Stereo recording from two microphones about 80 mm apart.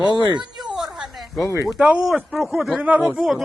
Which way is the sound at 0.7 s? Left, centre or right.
Centre.